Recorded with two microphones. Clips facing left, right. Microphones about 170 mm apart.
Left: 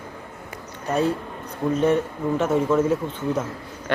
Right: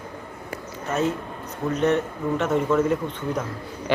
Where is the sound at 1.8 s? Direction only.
10° left (ahead or behind).